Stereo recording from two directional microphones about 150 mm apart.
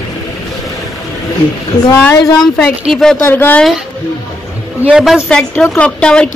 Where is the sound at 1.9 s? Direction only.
15° left (ahead or behind).